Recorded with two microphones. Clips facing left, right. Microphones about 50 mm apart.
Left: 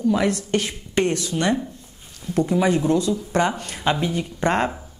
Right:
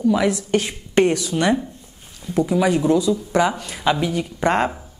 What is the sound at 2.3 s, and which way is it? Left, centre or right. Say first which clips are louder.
Speech: right 1 dB; centre.